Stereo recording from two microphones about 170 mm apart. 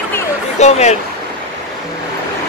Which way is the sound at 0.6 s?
40° left (ahead or behind).